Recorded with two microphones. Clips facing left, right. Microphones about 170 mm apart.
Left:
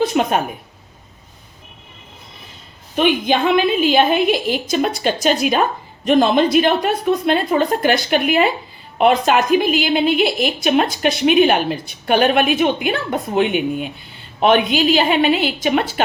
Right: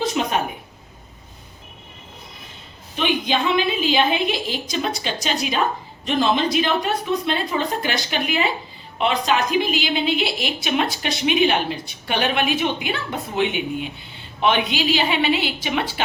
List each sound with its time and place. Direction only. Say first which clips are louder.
0.0 s a woman's voice: left 6 dB; 55° left (ahead or behind)
2.9 s a woman's voice: left 6 dB; 50° left (ahead or behind)